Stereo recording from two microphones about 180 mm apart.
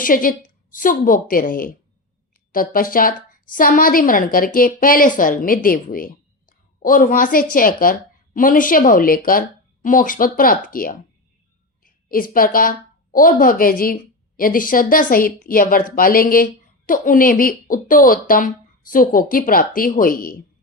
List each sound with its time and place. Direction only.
0.0 s a woman's voice: 50° left (ahead or behind)